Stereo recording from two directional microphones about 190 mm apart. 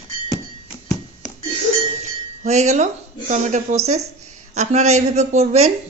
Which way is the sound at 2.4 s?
35° right (ahead or behind).